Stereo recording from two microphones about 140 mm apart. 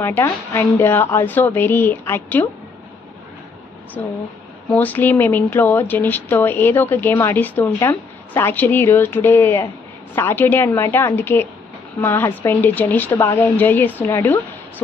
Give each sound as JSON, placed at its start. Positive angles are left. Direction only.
{"t": 0.0, "sound": "speech", "side_deg": 15}
{"t": 4.0, "sound": "speech", "side_deg": 15}